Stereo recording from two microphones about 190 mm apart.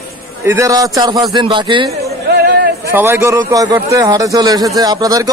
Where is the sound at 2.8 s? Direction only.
10° right (ahead or behind).